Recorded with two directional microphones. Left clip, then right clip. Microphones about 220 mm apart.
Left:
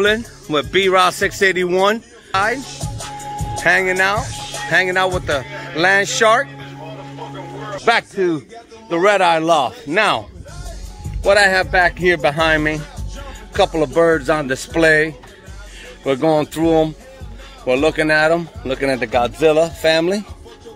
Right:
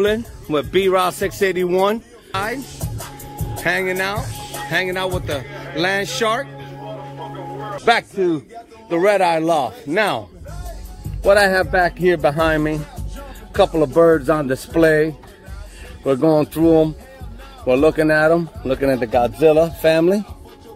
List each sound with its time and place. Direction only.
0.0 s speech: 10° right (ahead or behind)
3.6 s speech: 5° right (ahead or behind)
7.8 s speech: 5° right (ahead or behind)
11.2 s speech: 35° right (ahead or behind)